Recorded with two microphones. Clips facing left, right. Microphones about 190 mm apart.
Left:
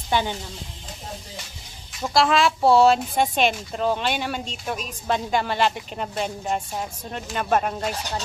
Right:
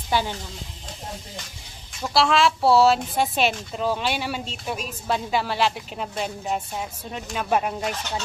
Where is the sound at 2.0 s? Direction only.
Centre (ahead or behind).